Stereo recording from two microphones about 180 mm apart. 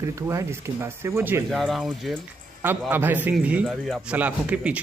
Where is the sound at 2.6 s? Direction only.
10° right (ahead or behind).